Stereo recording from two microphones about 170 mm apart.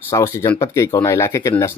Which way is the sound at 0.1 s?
15° left (ahead or behind).